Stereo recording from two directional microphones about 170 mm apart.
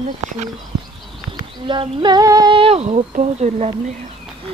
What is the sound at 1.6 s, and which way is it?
Speech, 30° right (ahead or behind).